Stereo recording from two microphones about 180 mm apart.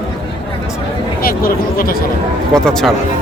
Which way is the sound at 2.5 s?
5° left (ahead or behind).